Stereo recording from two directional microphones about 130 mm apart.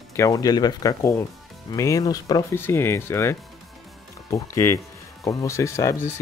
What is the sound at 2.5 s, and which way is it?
Speech, 20° left (ahead or behind).